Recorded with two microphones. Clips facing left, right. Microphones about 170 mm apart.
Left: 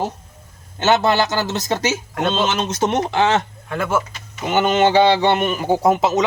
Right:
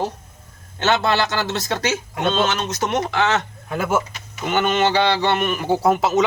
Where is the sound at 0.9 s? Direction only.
20° left (ahead or behind).